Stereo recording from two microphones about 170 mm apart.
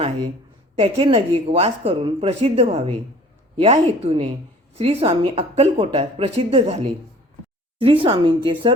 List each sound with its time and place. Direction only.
0.8 s a woman's voice: 35° right (ahead or behind)